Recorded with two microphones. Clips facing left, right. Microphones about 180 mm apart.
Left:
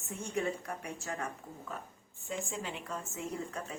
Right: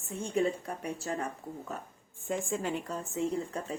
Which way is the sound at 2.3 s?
50° right (ahead or behind).